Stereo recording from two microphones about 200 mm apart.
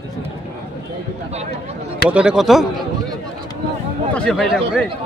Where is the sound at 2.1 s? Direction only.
5° right (ahead or behind).